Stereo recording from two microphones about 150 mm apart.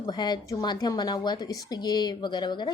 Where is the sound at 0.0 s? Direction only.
30° left (ahead or behind).